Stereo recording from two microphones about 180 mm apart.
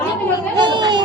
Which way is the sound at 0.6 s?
25° right (ahead or behind).